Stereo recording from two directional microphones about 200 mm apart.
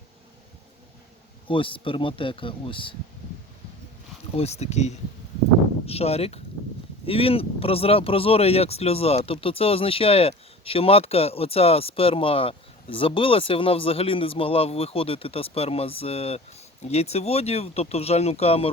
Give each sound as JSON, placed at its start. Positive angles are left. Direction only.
{"t": 1.5, "sound": "speech", "side_deg": 25}
{"t": 4.4, "sound": "speech", "side_deg": 30}